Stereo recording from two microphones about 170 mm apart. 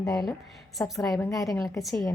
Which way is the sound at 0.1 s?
Centre (ahead or behind).